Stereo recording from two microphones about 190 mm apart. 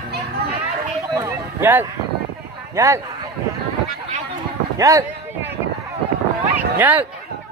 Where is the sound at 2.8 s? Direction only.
15° right (ahead or behind).